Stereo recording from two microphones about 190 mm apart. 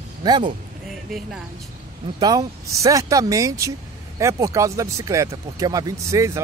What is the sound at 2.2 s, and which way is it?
Speech, 20° right (ahead or behind).